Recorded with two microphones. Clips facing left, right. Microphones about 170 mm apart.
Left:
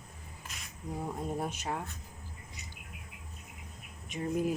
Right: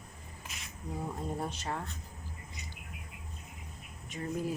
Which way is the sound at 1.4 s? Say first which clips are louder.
Left 1 dB; 15° left (ahead or behind).